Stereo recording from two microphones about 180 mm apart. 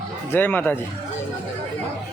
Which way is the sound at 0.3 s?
10° left (ahead or behind).